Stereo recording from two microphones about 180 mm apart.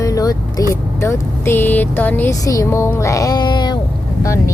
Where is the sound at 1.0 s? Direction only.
15° left (ahead or behind).